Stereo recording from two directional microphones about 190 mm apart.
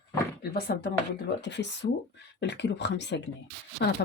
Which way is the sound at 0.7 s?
50° left (ahead or behind).